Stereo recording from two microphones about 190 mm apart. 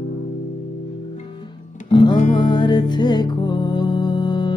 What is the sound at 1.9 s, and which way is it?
Music, 25° left (ahead or behind).